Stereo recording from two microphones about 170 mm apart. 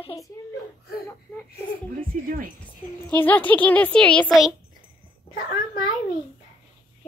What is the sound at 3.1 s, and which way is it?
A child's voice, 10° left (ahead or behind).